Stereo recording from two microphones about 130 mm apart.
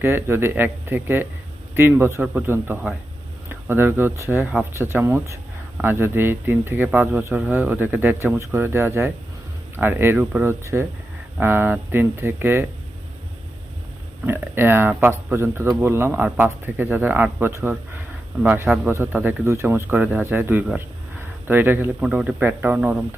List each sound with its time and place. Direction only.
0.0 s speech: 20° right (ahead or behind)
14.3 s a man's voice: 15° right (ahead or behind)